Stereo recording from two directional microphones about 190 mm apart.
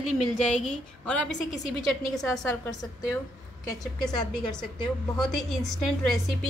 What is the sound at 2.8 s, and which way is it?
Speech, 20° left (ahead or behind).